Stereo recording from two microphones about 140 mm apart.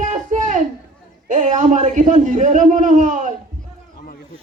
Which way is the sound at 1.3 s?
60° right (ahead or behind).